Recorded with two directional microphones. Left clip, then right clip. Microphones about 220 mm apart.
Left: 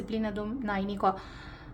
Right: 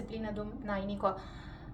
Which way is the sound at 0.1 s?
50° left (ahead or behind).